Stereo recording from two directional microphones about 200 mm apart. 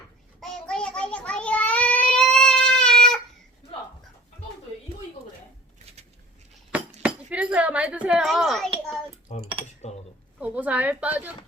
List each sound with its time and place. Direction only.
0.7 s child singing: 5° left (ahead or behind)
7.0 s a sound: 5° right (ahead or behind)
9.3 s cutlery: 35° left (ahead or behind)
9.9 s dishes: 35° left (ahead or behind)
10.4 s a woman's voice: 10° right (ahead or behind)